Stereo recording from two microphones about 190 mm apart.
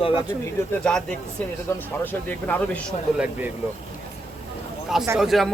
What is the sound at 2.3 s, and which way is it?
Speech, 10° left (ahead or behind).